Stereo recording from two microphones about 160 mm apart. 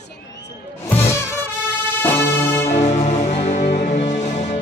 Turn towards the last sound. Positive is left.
turn(degrees=45)  # may be behind; listen again after turning